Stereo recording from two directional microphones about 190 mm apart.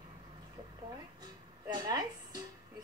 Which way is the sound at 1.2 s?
20° right (ahead or behind).